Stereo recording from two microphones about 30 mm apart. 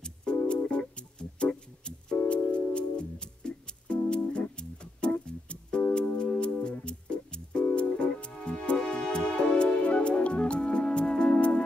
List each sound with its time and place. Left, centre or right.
0.0 s music: left
0.5 s music: left
2.1 s music: left
8.8 s music: left